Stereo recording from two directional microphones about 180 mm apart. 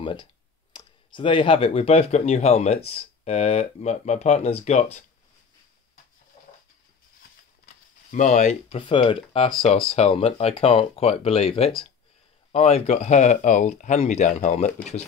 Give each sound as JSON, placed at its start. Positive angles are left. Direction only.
{"t": 0.0, "sound": "speech", "side_deg": 25}
{"t": 7.6, "sound": "speech", "side_deg": 45}